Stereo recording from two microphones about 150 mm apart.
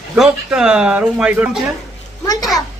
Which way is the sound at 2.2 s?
25° left (ahead or behind).